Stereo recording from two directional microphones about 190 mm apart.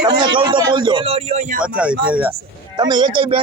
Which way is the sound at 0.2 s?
25° right (ahead or behind).